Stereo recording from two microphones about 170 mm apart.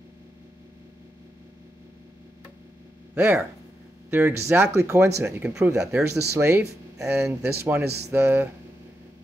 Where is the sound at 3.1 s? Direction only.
10° right (ahead or behind).